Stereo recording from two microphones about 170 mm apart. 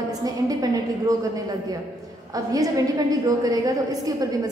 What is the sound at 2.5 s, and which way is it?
A woman's voice, 20° right (ahead or behind).